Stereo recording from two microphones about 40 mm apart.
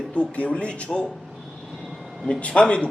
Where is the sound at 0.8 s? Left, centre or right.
Centre.